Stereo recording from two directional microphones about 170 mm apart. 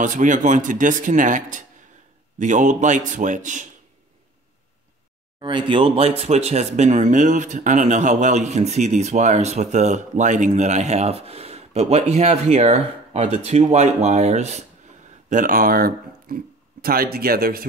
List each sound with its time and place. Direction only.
0.0 s speech: 50° right (ahead or behind)
5.4 s speech: 30° right (ahead or behind)
15.2 s speech: 50° right (ahead or behind)